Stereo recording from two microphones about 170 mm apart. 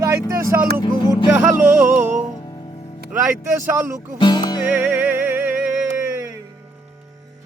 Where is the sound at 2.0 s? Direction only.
45° right (ahead or behind).